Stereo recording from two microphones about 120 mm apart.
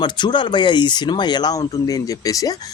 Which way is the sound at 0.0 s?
40° left (ahead or behind).